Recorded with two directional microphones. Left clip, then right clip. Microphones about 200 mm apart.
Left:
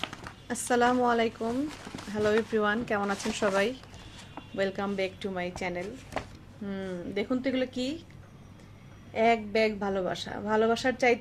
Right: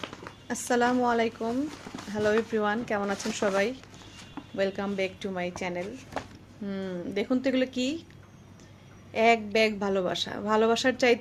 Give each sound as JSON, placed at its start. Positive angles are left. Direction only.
{"t": 0.4, "sound": "a woman's voice", "side_deg": 0}
{"t": 9.1, "sound": "a woman's voice", "side_deg": -15}